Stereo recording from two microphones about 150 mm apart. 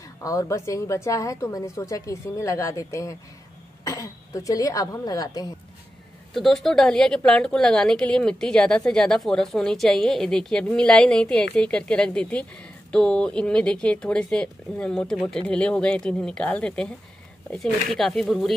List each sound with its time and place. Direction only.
0.2 s a woman's voice: 20° left (ahead or behind)
6.3 s a woman's voice: centre (ahead or behind)